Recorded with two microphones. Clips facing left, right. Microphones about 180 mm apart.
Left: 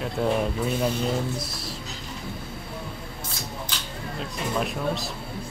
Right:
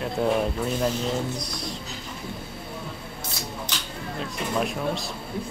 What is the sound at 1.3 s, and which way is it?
Music, 5° left (ahead or behind).